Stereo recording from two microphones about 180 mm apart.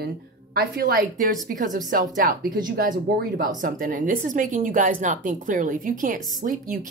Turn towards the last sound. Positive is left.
turn(degrees=-45)  # may be behind; listen again after turning